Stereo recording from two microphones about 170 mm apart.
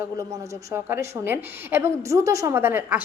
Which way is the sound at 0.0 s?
15° right (ahead or behind).